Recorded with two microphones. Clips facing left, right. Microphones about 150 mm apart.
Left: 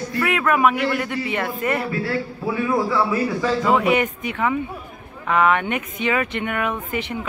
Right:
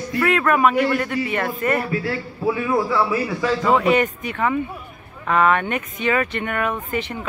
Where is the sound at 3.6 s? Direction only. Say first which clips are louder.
Right 2 dB; 15° left (ahead or behind).